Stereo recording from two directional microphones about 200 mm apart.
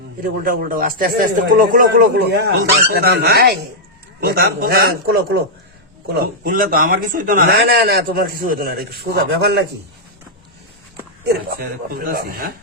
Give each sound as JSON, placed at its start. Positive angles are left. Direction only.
{"t": 0.4, "sound": "a man's voice", "side_deg": -45}
{"t": 11.3, "sound": "a man's voice", "side_deg": -50}